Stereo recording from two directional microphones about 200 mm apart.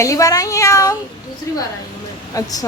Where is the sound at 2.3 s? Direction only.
15° left (ahead or behind).